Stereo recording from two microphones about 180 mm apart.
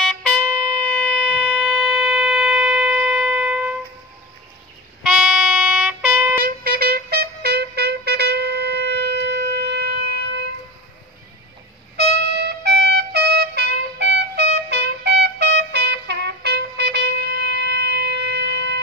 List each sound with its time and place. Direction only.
0.0 s music: 5° left (ahead or behind)
1.0 s siren: 5° left (ahead or behind)
5.0 s music: 5° right (ahead or behind)
6.4 s music: 55° right (ahead or behind)
12.0 s trumpet: 65° right (ahead or behind)
17.6 s wind instrument: 70° right (ahead or behind)